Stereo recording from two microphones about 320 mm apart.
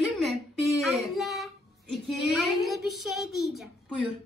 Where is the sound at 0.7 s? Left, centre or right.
Centre.